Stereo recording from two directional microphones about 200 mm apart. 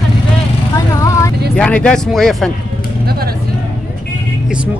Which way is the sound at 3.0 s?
50° right (ahead or behind).